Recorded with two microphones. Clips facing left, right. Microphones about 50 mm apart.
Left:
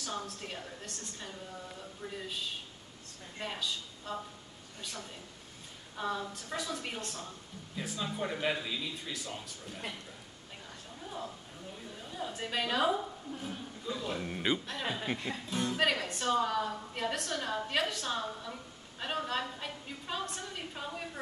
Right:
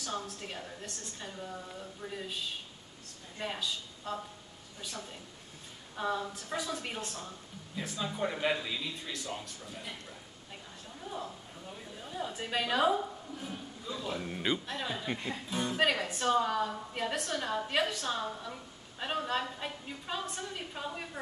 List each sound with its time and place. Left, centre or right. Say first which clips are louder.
0.0 s a woman's voice: right 1 dB; centre
3.3 s speech: right 1 dB; centre
5.9 s a woman's voice: right 2 dB; centre
12.0 s a woman's voice: right 1 dB; centre
13.8 s a woman's voice: left 1 dB; centre
15.5 s a woman's voice: right 1 dB; centre